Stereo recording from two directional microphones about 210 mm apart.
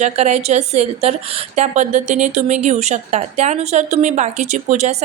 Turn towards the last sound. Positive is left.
turn(degrees=-35)  # may be behind; listen again after turning